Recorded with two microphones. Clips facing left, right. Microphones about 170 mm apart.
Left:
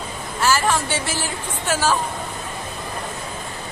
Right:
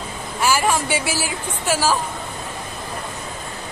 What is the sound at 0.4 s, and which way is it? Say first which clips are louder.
Speech: even; 10° right (ahead or behind).